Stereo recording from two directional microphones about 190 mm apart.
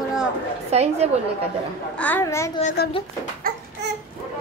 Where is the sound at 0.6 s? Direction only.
35° right (ahead or behind).